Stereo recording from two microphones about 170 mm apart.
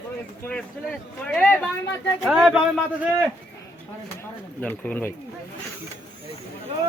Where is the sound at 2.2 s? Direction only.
5° right (ahead or behind).